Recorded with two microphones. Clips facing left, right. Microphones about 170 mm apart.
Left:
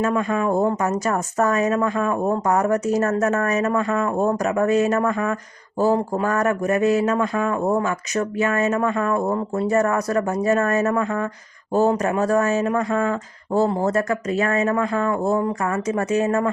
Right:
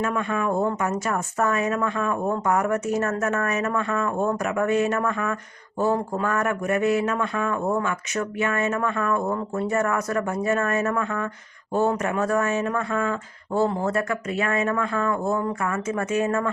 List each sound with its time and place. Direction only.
0.0 s speech: 35° left (ahead or behind)